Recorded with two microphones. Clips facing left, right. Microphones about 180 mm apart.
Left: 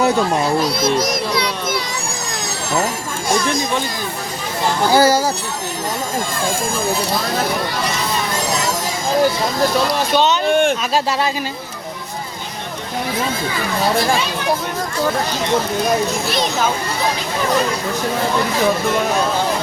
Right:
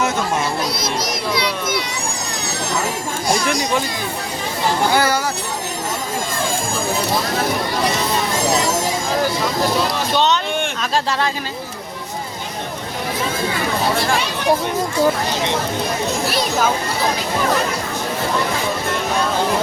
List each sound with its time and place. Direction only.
4.9 s speech: 30° left (ahead or behind)